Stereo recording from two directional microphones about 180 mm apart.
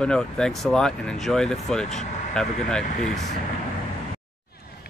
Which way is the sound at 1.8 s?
40° left (ahead or behind).